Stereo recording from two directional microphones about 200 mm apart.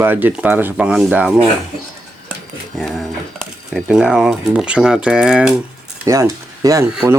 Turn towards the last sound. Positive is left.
turn(degrees=-5)  # may be behind; listen again after turning